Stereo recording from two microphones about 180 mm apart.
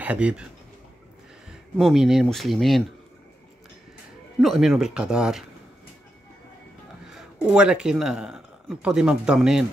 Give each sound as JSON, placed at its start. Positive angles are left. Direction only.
{"t": 0.0, "sound": "a man's voice", "side_deg": -10}
{"t": 1.8, "sound": "speech", "side_deg": 0}
{"t": 4.4, "sound": "speech", "side_deg": 0}
{"t": 7.4, "sound": "speech", "side_deg": -5}